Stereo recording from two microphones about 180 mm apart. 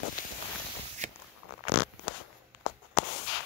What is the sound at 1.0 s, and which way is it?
Walk, 40° right (ahead or behind).